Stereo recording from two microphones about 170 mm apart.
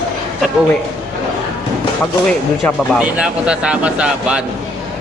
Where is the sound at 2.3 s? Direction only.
5° left (ahead or behind).